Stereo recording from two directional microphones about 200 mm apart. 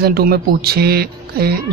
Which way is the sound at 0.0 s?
50° right (ahead or behind).